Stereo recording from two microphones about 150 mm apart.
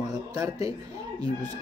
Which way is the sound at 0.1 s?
25° right (ahead or behind).